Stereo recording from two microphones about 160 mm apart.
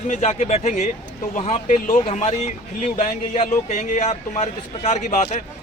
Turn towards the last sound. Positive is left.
turn(degrees=50)  # may be behind; listen again after turning